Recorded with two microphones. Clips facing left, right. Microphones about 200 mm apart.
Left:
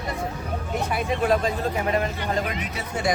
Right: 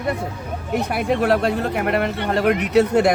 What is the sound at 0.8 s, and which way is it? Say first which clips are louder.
Speech: right 4 dB; 65° right (ahead or behind).